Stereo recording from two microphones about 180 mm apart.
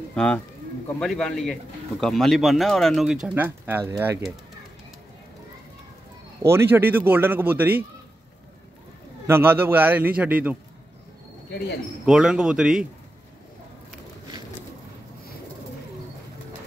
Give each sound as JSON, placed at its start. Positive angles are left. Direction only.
{"t": 0.1, "sound": "speech", "side_deg": 5}
{"t": 6.4, "sound": "speech", "side_deg": -10}
{"t": 9.3, "sound": "speech", "side_deg": -10}
{"t": 11.5, "sound": "speech", "side_deg": 70}
{"t": 12.1, "sound": "speech", "side_deg": -5}